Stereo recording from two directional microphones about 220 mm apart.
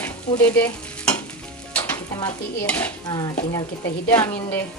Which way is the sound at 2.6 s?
10° left (ahead or behind).